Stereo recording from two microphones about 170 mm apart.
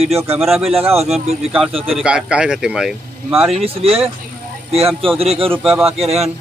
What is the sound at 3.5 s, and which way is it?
Speech, 35° right (ahead or behind).